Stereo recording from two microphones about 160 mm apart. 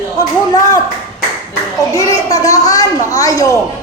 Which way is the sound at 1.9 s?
20° left (ahead or behind).